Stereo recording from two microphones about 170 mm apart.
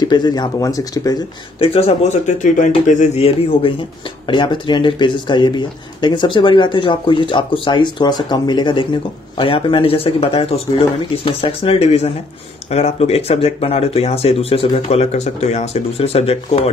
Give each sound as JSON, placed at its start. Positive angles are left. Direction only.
{"t": 0.0, "sound": "speech", "side_deg": 25}
{"t": 1.6, "sound": "speech", "side_deg": 35}